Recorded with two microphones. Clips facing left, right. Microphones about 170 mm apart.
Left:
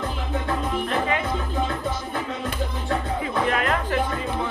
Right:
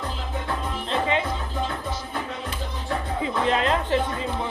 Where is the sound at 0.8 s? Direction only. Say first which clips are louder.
Right 4 dB; 25° right (ahead or behind).